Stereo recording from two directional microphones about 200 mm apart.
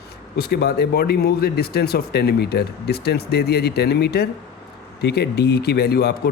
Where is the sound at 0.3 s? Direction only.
55° left (ahead or behind).